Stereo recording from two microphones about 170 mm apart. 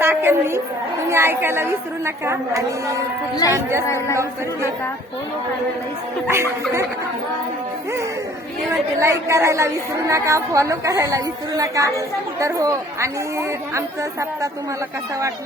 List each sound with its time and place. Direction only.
0.0 s a sound: 15° right (ahead or behind)
1.0 s a woman's voice: 15° right (ahead or behind)
6.2 s a woman's voice: 15° right (ahead or behind)
9.0 s a woman's voice: 15° right (ahead or behind)